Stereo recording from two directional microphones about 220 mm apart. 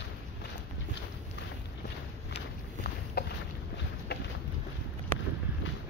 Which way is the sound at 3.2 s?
45° left (ahead or behind).